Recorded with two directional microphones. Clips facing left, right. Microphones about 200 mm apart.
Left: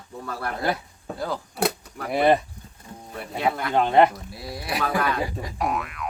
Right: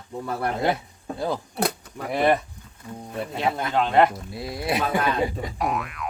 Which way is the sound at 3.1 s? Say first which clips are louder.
Even; 20° right (ahead or behind).